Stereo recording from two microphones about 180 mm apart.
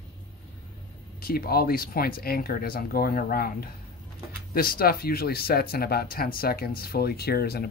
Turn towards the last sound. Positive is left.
turn(degrees=60)  # may be behind; listen again after turning